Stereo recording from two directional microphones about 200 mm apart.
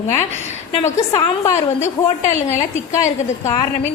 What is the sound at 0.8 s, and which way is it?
Speech, 15° left (ahead or behind).